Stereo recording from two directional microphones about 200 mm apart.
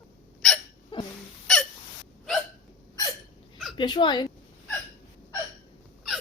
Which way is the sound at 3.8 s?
20° left (ahead or behind).